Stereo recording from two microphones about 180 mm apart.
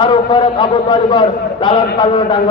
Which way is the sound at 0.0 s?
25° left (ahead or behind).